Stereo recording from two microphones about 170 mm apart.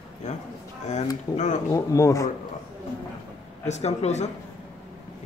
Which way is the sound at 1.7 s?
20° left (ahead or behind).